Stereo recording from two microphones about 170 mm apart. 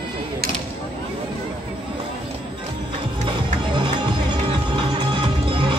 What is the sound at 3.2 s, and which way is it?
Music, 25° right (ahead or behind).